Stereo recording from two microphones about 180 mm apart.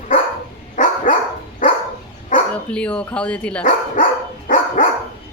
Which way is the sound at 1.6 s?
50° left (ahead or behind).